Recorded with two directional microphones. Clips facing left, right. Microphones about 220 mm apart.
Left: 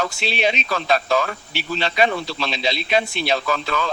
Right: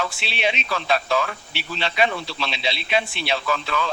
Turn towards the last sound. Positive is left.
turn(degrees=40)  # may be behind; listen again after turning